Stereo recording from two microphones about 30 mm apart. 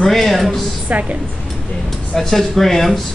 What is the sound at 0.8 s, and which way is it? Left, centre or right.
Speech, right.